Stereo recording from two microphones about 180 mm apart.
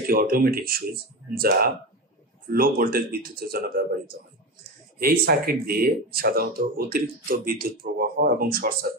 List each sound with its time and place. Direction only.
0.1 s speech: 55° right (ahead or behind)
2.5 s speech: 55° right (ahead or behind)